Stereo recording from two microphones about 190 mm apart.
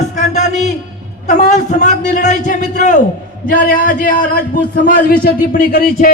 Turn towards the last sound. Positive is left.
turn(degrees=45)  # may be behind; listen again after turning